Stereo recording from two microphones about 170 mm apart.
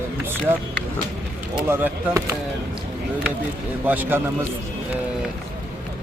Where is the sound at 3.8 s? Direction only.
10° right (ahead or behind).